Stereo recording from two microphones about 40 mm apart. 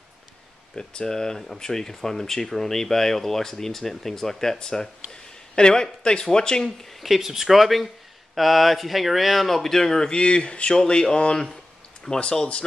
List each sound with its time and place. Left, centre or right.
0.7 s speech: centre
6.9 s speech: centre; by 12.6 s left